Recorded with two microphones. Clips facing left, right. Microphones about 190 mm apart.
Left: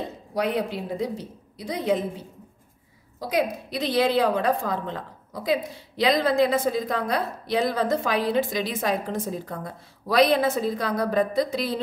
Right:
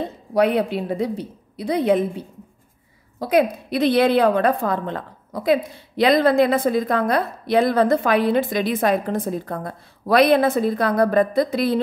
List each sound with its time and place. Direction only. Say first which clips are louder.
0.3 s a woman's voice: right 7 dB; 60° right (ahead or behind)
3.2 s a woman's voice: right 7 dB; 60° right (ahead or behind)